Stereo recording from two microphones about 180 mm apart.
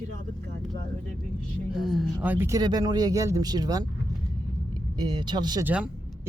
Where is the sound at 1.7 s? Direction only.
Centre (ahead or behind); by 5.6 s 25° right (ahead or behind).